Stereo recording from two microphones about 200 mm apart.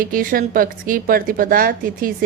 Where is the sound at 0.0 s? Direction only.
45° right (ahead or behind).